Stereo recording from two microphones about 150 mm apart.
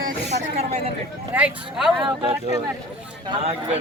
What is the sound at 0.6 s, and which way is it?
Speech, 45° right (ahead or behind).